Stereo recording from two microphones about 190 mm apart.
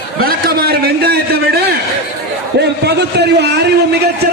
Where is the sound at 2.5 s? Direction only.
60° right (ahead or behind).